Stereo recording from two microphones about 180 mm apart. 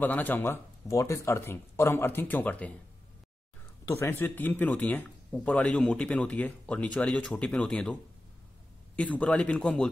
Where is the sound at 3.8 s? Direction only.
15° left (ahead or behind).